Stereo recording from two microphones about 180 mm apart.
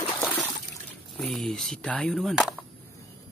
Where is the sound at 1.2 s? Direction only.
Centre (ahead or behind).